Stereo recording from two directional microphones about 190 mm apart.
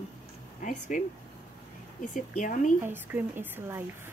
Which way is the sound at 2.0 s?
45° left (ahead or behind).